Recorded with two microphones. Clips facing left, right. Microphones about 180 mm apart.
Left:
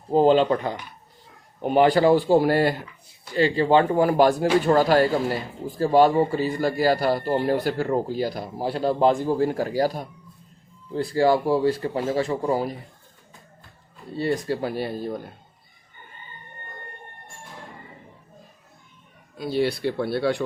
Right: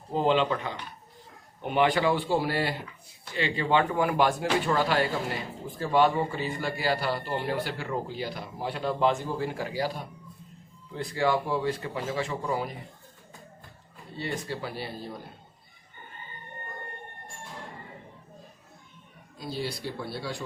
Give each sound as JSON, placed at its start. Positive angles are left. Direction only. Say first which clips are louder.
{"t": 0.1, "sound": "speech", "louder": "left 7 dB", "side_deg": 40}
{"t": 14.2, "sound": "speech", "louder": "left 9 dB", "side_deg": 40}
{"t": 19.4, "sound": "speech", "louder": "left 10 dB", "side_deg": 65}